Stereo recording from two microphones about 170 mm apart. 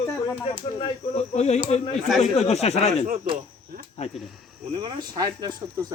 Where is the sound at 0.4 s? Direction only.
35° left (ahead or behind).